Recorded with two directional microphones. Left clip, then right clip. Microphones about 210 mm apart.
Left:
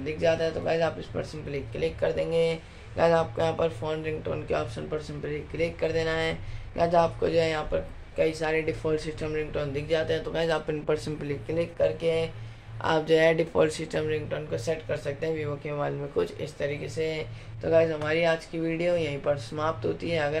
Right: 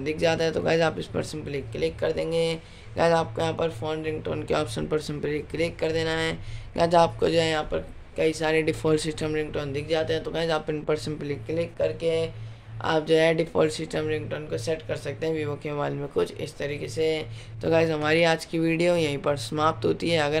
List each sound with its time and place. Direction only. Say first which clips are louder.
0.0 s speech: right 1 dB; 45° right (ahead or behind)
1.3 s speech: right 2 dB; 25° right (ahead or behind)
4.3 s speech: right 3 dB; 40° right (ahead or behind)
17.6 s speech: right 1 dB; 45° right (ahead or behind)